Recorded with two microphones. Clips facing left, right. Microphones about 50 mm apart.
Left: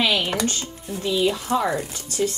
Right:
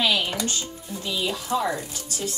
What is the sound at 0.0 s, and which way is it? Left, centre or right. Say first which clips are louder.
Computer keyboard: left 2 dB; left.